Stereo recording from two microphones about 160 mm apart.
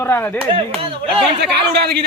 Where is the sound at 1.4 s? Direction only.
90° right.